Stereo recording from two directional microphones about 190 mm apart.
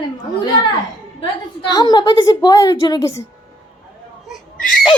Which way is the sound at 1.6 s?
20° left (ahead or behind).